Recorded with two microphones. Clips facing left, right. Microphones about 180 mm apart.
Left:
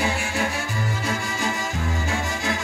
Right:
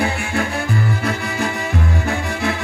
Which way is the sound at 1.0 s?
60° right (ahead or behind).